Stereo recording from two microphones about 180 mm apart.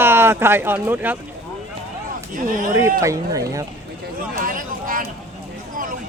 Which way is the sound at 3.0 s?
20° right (ahead or behind).